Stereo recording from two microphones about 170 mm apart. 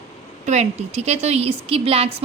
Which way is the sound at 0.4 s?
40° right (ahead or behind).